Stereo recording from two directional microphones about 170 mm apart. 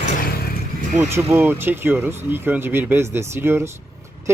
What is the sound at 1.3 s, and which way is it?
Speech, 15° right (ahead or behind).